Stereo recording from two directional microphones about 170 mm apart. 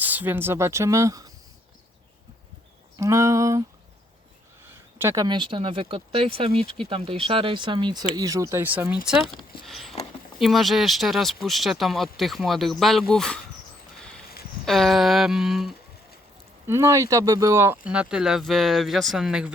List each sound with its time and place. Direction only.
0.0 s speech: 10° right (ahead or behind)
3.0 s speech: 15° right (ahead or behind)
4.7 s speech: 15° right (ahead or behind)
9.6 s a sound: centre (ahead or behind)
10.4 s speech: centre (ahead or behind)
14.6 s speech: centre (ahead or behind)
16.6 s speech: 15° right (ahead or behind)